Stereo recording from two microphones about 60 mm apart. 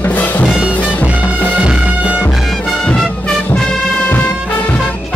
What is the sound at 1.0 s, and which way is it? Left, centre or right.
Music, right.